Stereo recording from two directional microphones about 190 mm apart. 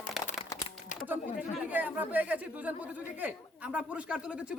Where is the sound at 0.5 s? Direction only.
15° left (ahead or behind).